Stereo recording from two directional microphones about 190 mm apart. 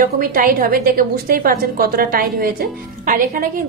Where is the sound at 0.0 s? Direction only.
45° right (ahead or behind).